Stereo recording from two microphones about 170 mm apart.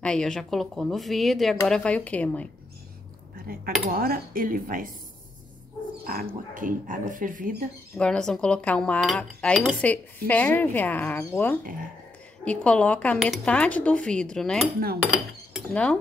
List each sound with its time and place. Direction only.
0.0 s speech: 5° left (ahead or behind)
3.5 s cutlery: 60° right (ahead or behind)
6.0 s speech: 55° right (ahead or behind)
8.0 s speech: 5° left (ahead or behind)
15.7 s speech: 5° left (ahead or behind)